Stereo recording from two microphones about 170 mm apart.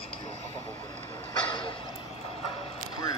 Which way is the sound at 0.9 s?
25° left (ahead or behind).